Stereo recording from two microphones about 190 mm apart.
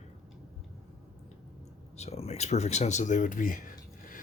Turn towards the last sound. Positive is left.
turn(degrees=45)  # may be behind; listen again after turning